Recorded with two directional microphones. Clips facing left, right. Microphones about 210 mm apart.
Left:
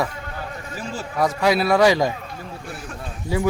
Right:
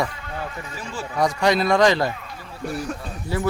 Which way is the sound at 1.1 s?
5° left (ahead or behind).